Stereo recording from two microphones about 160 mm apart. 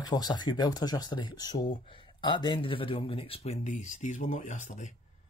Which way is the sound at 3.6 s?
50° left (ahead or behind).